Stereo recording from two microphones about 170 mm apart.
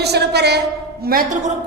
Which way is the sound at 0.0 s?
75° right (ahead or behind).